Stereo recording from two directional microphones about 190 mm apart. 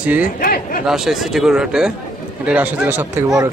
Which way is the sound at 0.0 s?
5° right (ahead or behind).